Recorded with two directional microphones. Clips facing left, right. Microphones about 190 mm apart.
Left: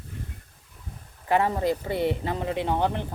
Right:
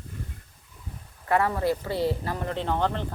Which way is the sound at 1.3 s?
20° left (ahead or behind).